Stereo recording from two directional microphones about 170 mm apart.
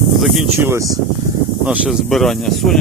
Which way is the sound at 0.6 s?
20° right (ahead or behind).